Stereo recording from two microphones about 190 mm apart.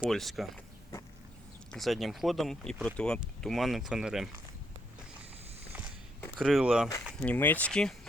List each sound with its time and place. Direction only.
0.0 s speech: centre (ahead or behind)
1.7 s speech: centre (ahead or behind)
6.3 s speech: 5° right (ahead or behind)
7.2 s speech: 10° left (ahead or behind)